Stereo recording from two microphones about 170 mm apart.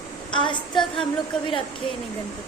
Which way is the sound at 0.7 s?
Centre (ahead or behind).